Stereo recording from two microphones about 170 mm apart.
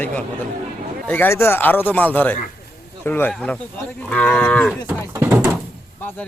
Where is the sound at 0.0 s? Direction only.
10° left (ahead or behind).